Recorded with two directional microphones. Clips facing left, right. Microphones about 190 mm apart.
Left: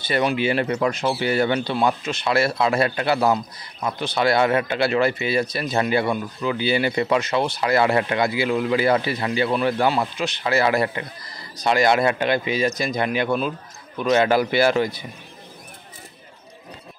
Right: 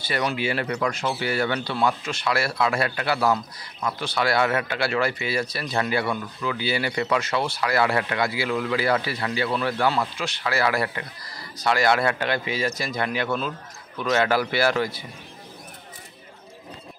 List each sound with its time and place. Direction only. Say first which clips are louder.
0.0 s speech: left 5 dB; 20° left (ahead or behind)